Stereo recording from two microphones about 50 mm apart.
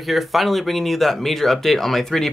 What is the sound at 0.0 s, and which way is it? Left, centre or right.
Speech, centre.